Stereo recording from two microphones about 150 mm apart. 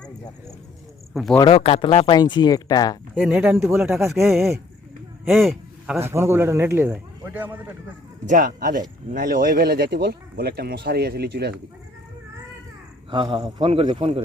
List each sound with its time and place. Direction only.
1.1 s speech: centre (ahead or behind)
1.5 s speech: 40° left (ahead or behind); by 3.0 s 25° left (ahead or behind)
3.2 s a man's voice: 5° right (ahead or behind)
6.0 s speech: 15° right (ahead or behind)
8.3 s speech: 65° right (ahead or behind); by 11.5 s 90° right
13.1 s a man's voice: 35° right (ahead or behind)